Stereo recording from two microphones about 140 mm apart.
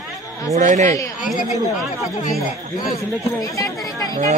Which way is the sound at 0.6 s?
60° right (ahead or behind).